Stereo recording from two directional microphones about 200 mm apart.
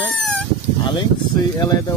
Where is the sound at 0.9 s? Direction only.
20° left (ahead or behind).